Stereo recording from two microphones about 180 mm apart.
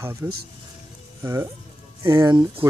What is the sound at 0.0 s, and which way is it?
Speech, 15° right (ahead or behind).